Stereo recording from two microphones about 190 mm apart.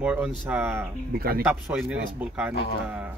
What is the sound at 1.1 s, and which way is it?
Speech, 55° right (ahead or behind).